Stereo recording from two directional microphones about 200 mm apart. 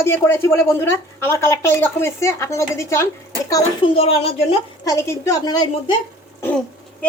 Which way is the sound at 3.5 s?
25° left (ahead or behind).